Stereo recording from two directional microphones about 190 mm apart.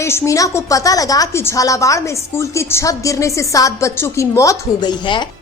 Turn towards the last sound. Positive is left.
turn(degrees=25)  # may be behind; listen again after turning